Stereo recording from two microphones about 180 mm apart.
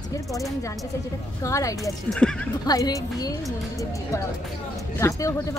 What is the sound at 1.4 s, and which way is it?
Speech, 20° left (ahead or behind).